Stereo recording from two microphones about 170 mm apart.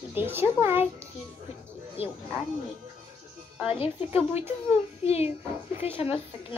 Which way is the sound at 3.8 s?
35° left (ahead or behind).